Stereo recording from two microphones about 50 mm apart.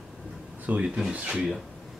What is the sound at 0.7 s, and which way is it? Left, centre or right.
Speech, right.